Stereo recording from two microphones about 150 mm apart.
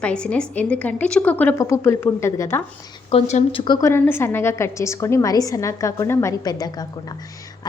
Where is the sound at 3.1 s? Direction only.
45° left (ahead or behind).